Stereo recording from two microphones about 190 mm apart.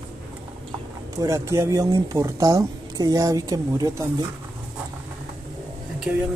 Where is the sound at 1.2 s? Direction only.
15° right (ahead or behind).